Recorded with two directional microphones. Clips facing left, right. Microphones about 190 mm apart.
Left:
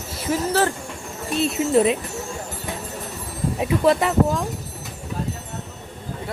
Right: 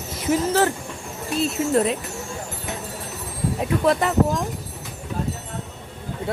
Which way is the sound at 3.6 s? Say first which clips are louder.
Left 2 dB; 5° left (ahead or behind).